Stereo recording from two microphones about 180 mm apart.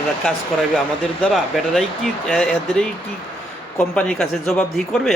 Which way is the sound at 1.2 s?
Centre (ahead or behind).